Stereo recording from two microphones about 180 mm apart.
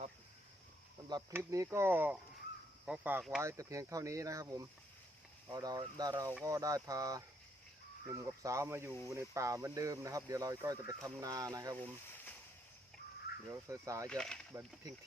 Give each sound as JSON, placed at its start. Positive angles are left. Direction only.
{"t": 1.0, "sound": "speech", "side_deg": -20}
{"t": 3.4, "sound": "speech", "side_deg": -15}
{"t": 11.8, "sound": "speech", "side_deg": 10}
{"t": 13.7, "sound": "speech", "side_deg": -20}
{"t": 14.1, "sound": "speech", "side_deg": 5}